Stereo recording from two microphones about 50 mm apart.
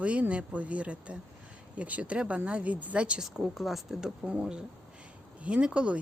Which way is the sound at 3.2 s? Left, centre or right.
Centre.